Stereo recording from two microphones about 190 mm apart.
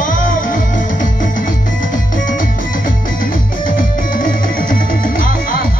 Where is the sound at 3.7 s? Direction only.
45° left (ahead or behind).